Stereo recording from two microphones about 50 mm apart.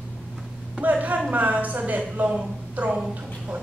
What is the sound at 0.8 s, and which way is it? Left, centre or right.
A woman's voice, right.